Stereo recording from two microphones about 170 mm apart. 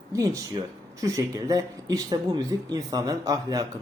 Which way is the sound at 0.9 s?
20° right (ahead or behind).